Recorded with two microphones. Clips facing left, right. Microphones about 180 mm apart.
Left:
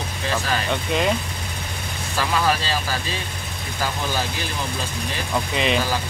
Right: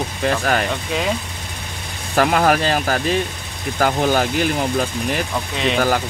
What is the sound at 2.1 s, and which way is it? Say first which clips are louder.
Speech: right 6 dB; 55° right (ahead or behind).